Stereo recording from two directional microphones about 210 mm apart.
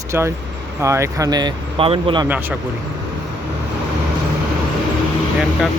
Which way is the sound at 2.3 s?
10° right (ahead or behind).